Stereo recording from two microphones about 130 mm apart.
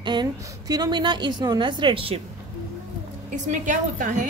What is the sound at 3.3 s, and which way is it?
Speech, 70° right (ahead or behind).